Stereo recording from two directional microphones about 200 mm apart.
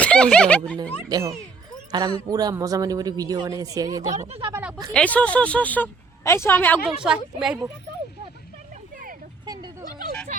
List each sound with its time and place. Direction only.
0.0 s speech: 5° left (ahead or behind)
1.0 s speech: 15° right (ahead or behind)
4.1 s speech: 35° right (ahead or behind)
4.5 s speech: 10° right (ahead or behind)
4.9 s speech: 5° left (ahead or behind)
6.8 s speech: 5° right (ahead or behind)
9.5 s speech: 20° right (ahead or behind)